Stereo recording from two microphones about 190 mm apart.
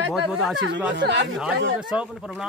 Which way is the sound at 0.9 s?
65° right (ahead or behind).